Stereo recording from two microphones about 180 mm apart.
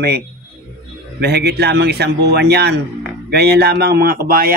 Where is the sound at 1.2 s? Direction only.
65° right (ahead or behind).